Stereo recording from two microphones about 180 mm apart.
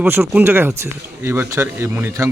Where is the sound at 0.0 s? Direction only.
10° right (ahead or behind).